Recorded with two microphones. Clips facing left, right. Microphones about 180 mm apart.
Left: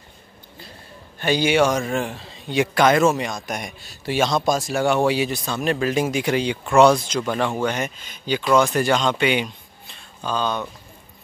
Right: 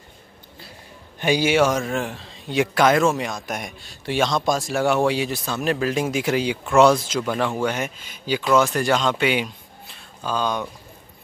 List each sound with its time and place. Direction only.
1.2 s a man's voice: 5° right (ahead or behind)